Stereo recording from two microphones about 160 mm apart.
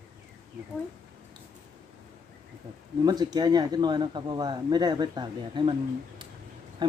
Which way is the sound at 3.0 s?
25° right (ahead or behind).